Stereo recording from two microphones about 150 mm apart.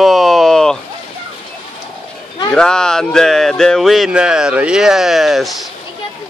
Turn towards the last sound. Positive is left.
turn(degrees=0)  # may be behind; listen again after turning